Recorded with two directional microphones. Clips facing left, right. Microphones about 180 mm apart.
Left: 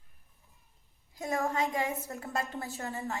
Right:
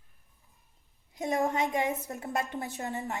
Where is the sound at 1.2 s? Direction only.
20° right (ahead or behind).